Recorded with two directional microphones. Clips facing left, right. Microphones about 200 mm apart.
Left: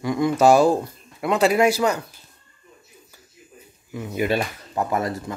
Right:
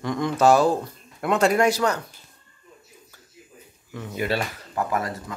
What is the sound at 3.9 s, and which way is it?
Speech, 15° left (ahead or behind).